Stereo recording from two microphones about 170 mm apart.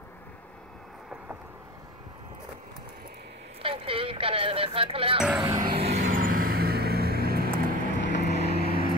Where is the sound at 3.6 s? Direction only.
30° right (ahead or behind).